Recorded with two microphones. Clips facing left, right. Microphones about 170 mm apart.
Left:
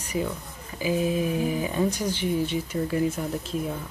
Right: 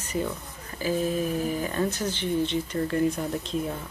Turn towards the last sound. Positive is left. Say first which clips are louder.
# even
turn(degrees=0)  # may be behind; listen again after turning